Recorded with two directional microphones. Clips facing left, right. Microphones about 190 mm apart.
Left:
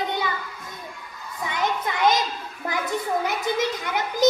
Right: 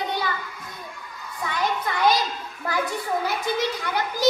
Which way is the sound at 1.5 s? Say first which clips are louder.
Even; 20° left (ahead or behind).